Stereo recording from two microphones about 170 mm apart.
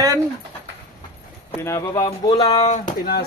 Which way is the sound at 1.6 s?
15° left (ahead or behind).